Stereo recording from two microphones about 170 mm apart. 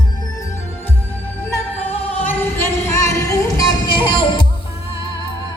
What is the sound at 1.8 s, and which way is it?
Music, 35° left (ahead or behind).